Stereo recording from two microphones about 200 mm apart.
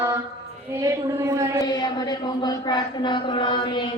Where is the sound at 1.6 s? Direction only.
20° left (ahead or behind).